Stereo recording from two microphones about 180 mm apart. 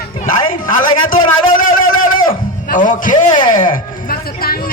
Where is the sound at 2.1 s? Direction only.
50° left (ahead or behind).